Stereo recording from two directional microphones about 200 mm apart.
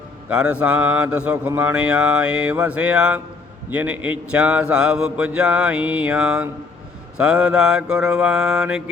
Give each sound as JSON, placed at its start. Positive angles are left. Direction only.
{"t": 0.3, "sound": "mantra", "side_deg": -5}
{"t": 3.7, "sound": "a man's voice", "side_deg": -5}